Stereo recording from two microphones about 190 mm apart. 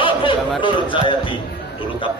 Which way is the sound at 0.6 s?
25° left (ahead or behind).